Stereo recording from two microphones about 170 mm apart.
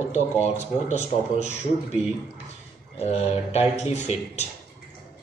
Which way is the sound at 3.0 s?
40° left (ahead or behind).